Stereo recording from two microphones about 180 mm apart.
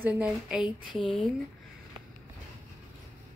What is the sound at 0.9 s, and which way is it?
Speech, 25° left (ahead or behind).